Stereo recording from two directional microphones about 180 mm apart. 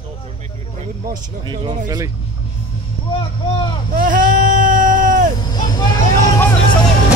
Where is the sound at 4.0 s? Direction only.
45° right (ahead or behind).